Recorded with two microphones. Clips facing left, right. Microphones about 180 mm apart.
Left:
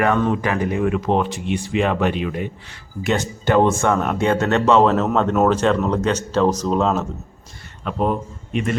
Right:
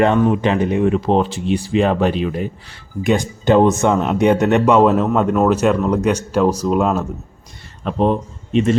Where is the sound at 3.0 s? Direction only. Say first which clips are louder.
Right 4 dB; 15° right (ahead or behind).